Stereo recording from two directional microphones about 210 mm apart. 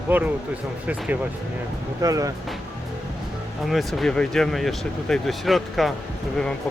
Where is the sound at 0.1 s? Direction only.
10° right (ahead or behind).